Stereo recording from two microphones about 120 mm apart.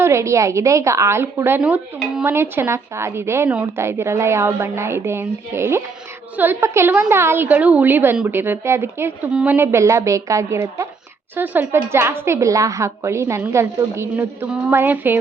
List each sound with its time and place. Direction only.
0.0 s a woman's voice: 25° right (ahead or behind)
11.3 s a woman's voice: 15° right (ahead or behind)